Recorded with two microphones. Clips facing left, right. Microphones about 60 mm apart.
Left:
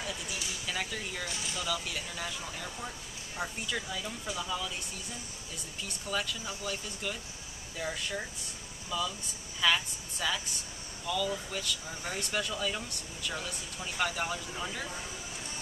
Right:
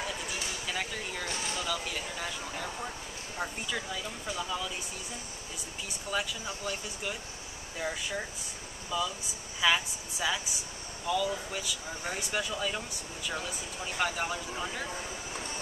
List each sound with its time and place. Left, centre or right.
0.7 s speech: centre
1.2 s speech: right
1.6 s speech: centre
5.9 s speech: centre